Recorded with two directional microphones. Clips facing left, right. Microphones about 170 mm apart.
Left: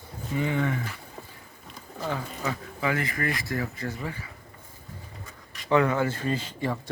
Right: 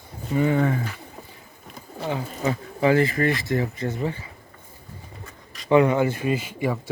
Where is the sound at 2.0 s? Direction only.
25° right (ahead or behind).